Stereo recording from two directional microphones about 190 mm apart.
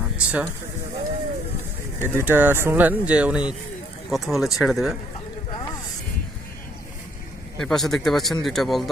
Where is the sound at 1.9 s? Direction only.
10° left (ahead or behind).